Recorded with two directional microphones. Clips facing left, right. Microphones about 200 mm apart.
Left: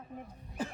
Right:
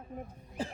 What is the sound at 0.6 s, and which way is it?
Cough, 30° right (ahead or behind).